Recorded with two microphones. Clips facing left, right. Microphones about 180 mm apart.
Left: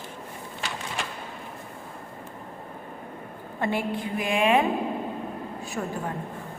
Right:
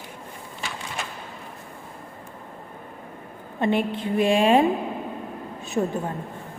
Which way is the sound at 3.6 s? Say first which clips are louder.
Right 4 dB; 20° right (ahead or behind).